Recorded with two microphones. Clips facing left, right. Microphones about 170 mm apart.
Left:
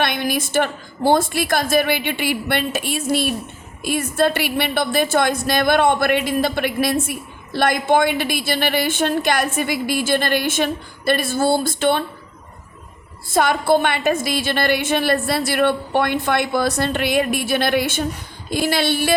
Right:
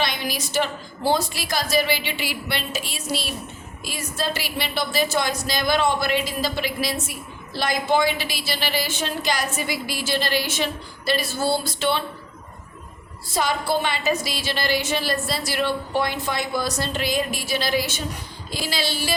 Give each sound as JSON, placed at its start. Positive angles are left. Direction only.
{"t": 0.0, "sound": "a woman's voice", "side_deg": 55}
{"t": 13.3, "sound": "a woman's voice", "side_deg": 55}